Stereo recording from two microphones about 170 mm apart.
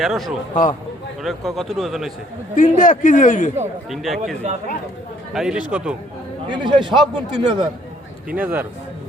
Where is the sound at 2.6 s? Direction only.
50° left (ahead or behind).